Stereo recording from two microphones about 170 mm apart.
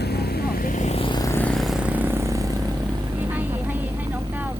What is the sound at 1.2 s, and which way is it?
Vehicle, 15° left (ahead or behind).